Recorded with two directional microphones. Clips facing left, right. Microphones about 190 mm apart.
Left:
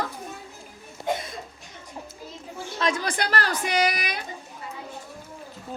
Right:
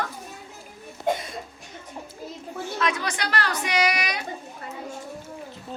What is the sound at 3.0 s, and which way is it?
Speech, 50° left (ahead or behind).